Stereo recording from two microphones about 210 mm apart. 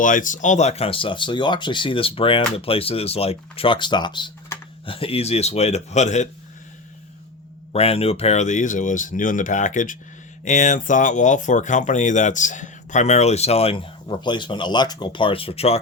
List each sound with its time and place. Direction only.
0.0 s speech: 40° left (ahead or behind)
7.7 s speech: 30° left (ahead or behind)